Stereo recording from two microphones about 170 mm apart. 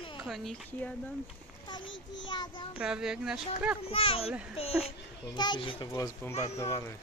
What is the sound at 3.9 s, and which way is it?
Speech, 35° left (ahead or behind).